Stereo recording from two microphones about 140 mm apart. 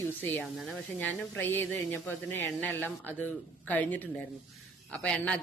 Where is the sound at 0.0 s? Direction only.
10° left (ahead or behind).